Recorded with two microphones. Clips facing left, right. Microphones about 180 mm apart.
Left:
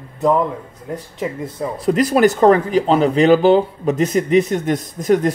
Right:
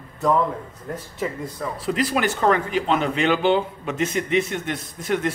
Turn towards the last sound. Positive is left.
turn(degrees=40)  # may be behind; listen again after turning